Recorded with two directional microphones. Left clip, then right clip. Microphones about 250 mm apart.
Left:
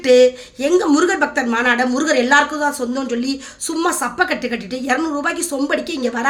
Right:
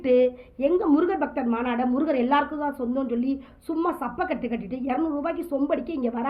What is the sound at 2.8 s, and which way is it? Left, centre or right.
Speech, left.